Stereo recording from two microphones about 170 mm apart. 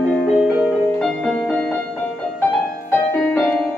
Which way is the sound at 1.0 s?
5° left (ahead or behind).